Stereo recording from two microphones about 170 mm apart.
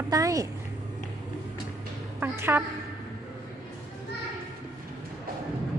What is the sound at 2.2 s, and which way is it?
Speech, 15° right (ahead or behind).